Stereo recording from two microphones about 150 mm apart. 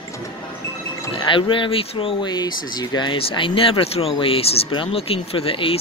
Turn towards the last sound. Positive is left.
turn(degrees=35)  # may be behind; listen again after turning